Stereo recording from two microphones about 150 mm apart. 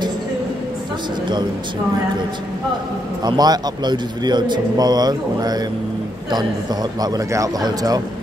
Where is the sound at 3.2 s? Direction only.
25° right (ahead or behind).